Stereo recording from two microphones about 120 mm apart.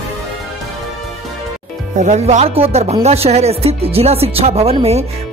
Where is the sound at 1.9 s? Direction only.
80° right.